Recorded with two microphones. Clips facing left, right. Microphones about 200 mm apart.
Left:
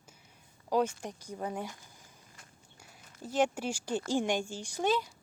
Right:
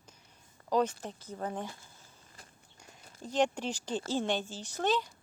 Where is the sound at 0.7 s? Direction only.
10° left (ahead or behind).